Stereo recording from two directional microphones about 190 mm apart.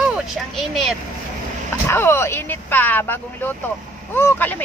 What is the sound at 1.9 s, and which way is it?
Speech, 10° left (ahead or behind).